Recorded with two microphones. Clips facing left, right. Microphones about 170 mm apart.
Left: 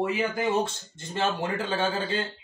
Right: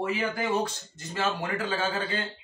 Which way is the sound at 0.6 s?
25° left (ahead or behind).